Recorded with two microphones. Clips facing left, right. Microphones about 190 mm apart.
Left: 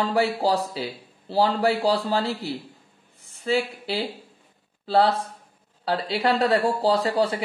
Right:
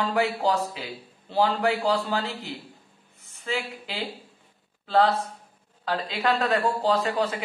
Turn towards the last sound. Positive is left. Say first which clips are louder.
# left 3 dB
turn(degrees=30)  # may be behind; listen again after turning